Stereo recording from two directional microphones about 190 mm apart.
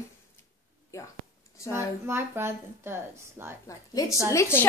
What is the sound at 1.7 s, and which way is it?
Speech, 10° right (ahead or behind).